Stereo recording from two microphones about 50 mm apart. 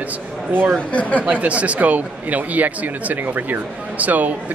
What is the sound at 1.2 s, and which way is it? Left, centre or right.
Speech, right.